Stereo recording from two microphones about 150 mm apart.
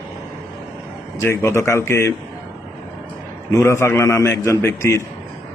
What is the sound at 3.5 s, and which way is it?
Speech, 20° left (ahead or behind).